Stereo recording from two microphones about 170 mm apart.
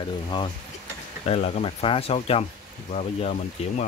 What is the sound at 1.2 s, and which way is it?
Speech, 40° left (ahead or behind).